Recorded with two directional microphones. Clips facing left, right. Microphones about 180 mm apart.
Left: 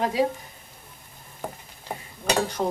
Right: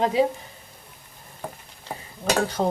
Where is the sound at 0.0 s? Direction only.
25° right (ahead or behind).